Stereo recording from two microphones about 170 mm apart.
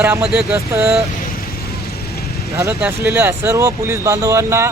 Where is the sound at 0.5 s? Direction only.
15° right (ahead or behind).